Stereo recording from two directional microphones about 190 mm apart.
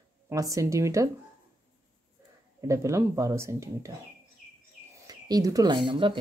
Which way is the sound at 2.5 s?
15° right (ahead or behind).